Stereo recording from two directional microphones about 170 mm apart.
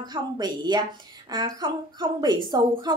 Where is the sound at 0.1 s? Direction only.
25° right (ahead or behind).